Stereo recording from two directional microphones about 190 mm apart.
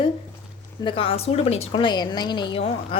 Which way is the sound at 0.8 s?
25° left (ahead or behind).